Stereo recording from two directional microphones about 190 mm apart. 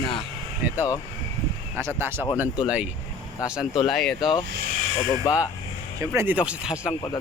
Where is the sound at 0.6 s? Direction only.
10° right (ahead or behind).